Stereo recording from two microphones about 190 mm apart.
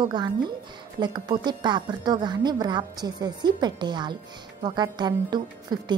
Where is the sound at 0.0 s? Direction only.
25° right (ahead or behind).